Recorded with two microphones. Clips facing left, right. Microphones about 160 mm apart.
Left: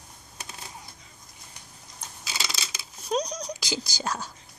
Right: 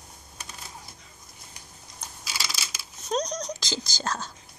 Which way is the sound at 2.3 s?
25° left (ahead or behind).